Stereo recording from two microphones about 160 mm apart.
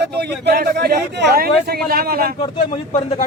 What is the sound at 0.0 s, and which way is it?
A man's voice, 90° right.